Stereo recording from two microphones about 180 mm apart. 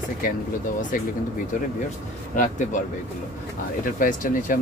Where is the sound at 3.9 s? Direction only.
50° left (ahead or behind).